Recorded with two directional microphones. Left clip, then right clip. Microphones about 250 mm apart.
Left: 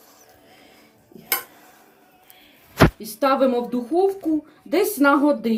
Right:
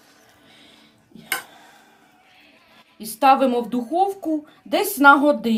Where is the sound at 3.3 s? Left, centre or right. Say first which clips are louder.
Right 3 dB; right.